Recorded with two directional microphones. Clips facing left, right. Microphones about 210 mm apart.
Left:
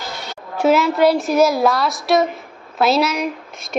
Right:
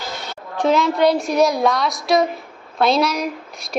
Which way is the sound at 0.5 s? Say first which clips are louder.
Left 2 dB; 5° left (ahead or behind).